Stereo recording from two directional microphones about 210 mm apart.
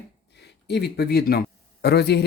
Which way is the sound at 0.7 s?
50° left (ahead or behind).